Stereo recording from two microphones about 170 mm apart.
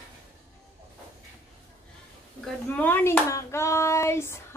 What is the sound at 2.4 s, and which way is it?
Speech, 10° left (ahead or behind).